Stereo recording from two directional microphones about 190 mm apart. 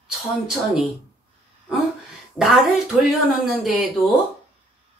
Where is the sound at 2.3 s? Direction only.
Centre (ahead or behind).